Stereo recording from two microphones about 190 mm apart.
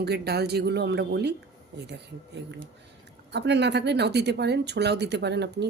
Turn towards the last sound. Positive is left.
turn(degrees=-65)  # may be behind; listen again after turning